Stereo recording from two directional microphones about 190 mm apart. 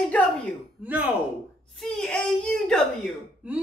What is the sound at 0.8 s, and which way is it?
Speech, 10° right (ahead or behind).